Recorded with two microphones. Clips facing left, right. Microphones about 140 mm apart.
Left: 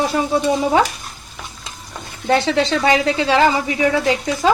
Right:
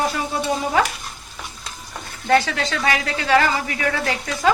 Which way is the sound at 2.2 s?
25° left (ahead or behind).